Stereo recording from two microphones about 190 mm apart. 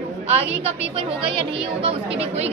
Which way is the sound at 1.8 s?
30° right (ahead or behind).